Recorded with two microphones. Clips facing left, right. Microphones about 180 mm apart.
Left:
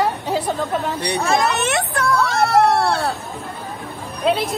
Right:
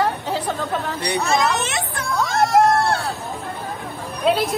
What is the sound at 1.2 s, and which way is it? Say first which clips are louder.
Speech: left 1 dB; 55° left (ahead or behind).